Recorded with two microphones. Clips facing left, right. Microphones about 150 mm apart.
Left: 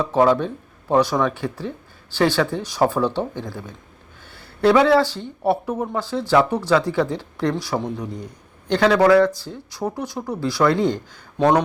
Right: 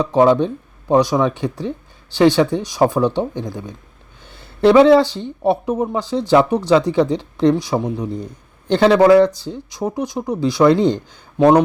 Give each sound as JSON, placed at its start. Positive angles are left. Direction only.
{"t": 0.0, "sound": "speech", "side_deg": -20}